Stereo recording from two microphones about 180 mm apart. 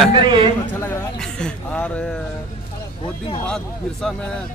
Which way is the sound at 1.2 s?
5° left (ahead or behind).